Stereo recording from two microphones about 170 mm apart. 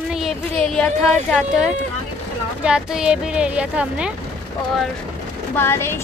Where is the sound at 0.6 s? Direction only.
5° left (ahead or behind).